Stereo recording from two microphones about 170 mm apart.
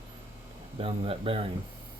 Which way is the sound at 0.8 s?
35° right (ahead or behind).